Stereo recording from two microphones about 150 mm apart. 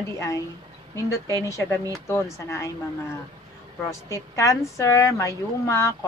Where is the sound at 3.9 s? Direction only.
20° left (ahead or behind).